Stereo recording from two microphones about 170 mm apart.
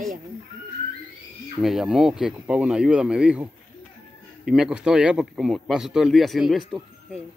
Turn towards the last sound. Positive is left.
turn(degrees=0)  # may be behind; listen again after turning